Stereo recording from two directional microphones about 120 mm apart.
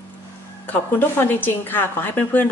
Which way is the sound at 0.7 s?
15° left (ahead or behind).